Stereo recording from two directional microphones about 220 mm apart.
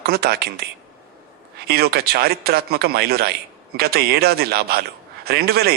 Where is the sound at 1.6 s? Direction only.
45° right (ahead or behind).